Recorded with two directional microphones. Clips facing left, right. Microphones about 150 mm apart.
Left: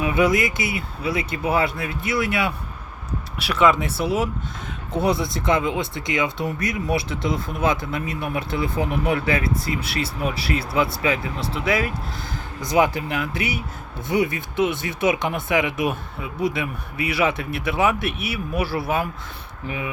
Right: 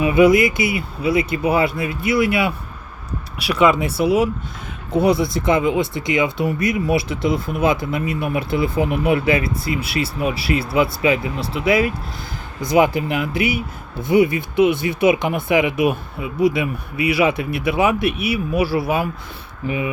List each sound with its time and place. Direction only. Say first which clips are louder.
0.0 s speech: right 6 dB; 10° right (ahead or behind)